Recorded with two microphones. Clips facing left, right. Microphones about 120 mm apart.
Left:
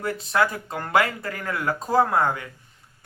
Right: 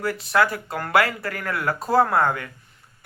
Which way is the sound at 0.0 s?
20° left (ahead or behind).